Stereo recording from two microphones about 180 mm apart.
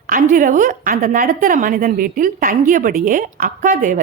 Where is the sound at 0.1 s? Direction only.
50° right (ahead or behind).